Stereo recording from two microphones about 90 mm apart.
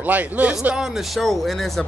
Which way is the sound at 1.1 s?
Centre (ahead or behind).